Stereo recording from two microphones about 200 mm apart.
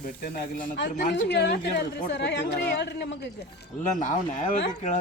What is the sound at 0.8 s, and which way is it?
Speech, 60° left (ahead or behind).